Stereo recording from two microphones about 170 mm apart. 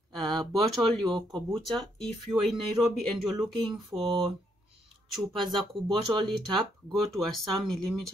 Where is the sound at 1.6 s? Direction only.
Centre (ahead or behind).